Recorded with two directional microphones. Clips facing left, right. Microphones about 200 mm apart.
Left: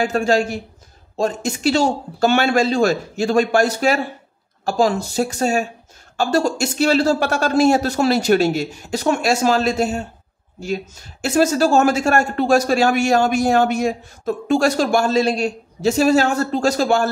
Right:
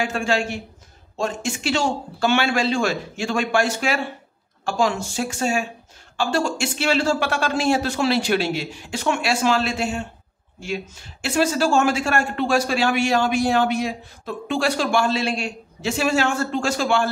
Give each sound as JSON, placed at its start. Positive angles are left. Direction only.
{"t": 0.0, "sound": "speech", "side_deg": 40}